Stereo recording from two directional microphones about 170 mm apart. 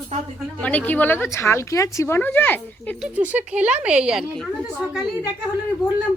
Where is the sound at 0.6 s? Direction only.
10° left (ahead or behind).